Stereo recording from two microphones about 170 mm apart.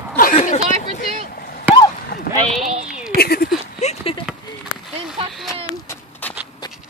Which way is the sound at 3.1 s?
65° left (ahead or behind).